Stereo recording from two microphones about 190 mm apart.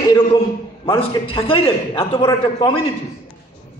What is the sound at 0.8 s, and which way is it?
A man's voice, 30° left (ahead or behind).